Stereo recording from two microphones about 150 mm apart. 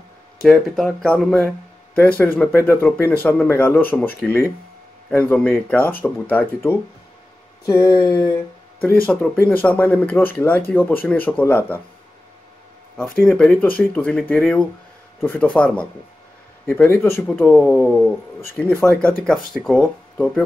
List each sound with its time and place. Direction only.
0.4 s speech: 5° left (ahead or behind)
9.0 s speech: 5° left (ahead or behind)
13.3 s speech: 10° left (ahead or behind)
17.8 s speech: centre (ahead or behind)
18.6 s speech: 15° left (ahead or behind)